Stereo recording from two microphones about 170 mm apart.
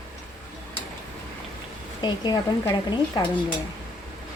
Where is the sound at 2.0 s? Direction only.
25° left (ahead or behind).